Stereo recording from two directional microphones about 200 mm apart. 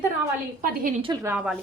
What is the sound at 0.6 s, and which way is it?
Speech, 45° right (ahead or behind).